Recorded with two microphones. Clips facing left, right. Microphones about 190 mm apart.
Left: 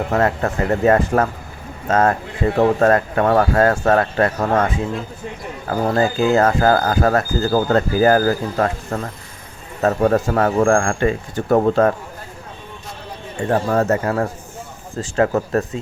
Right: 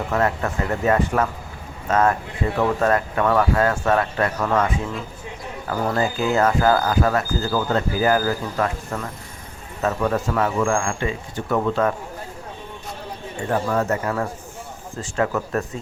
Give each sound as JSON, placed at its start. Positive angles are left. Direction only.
{"t": 0.1, "sound": "speech", "side_deg": 45}
{"t": 13.5, "sound": "speech", "side_deg": 40}